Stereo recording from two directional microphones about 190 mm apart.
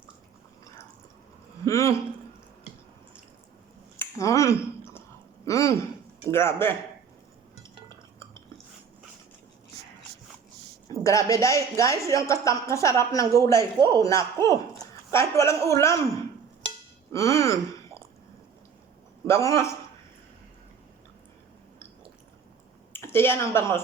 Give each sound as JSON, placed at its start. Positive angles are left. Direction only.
{"t": 1.6, "sound": "a woman's voice", "side_deg": 15}
{"t": 3.9, "sound": "a sound", "side_deg": 15}
{"t": 5.5, "sound": "a woman's voice", "side_deg": 15}
{"t": 10.8, "sound": "a woman's voice", "side_deg": 15}
{"t": 17.1, "sound": "speech", "side_deg": 15}
{"t": 19.3, "sound": "a woman's voice", "side_deg": 15}
{"t": 22.9, "sound": "a woman's voice", "side_deg": 10}